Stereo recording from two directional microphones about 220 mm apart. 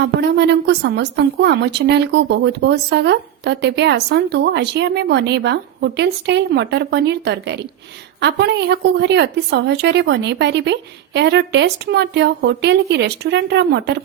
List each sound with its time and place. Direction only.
0.0 s a woman's voice: 50° right (ahead or behind)